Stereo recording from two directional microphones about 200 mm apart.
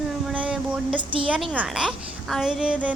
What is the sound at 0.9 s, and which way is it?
Speech, 25° right (ahead or behind).